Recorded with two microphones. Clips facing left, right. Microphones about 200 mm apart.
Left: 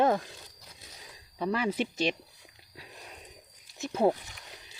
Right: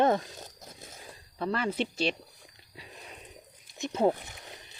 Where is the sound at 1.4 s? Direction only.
15° left (ahead or behind).